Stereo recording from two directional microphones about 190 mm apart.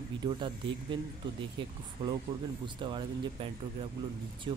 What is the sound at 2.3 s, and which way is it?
Speech, 25° right (ahead or behind).